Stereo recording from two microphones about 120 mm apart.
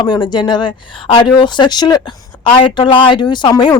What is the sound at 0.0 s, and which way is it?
Speech, 40° left (ahead or behind).